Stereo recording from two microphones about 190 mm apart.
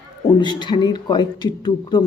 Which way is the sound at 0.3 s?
25° left (ahead or behind).